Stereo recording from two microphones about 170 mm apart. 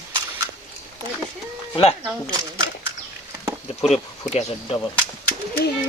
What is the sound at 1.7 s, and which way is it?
Speech, 35° left (ahead or behind).